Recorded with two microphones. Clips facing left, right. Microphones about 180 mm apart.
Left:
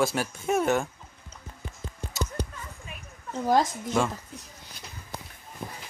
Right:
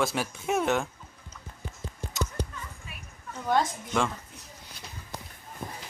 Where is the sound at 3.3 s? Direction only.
40° left (ahead or behind).